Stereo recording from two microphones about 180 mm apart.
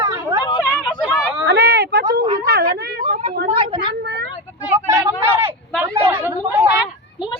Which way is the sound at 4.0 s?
70° right (ahead or behind).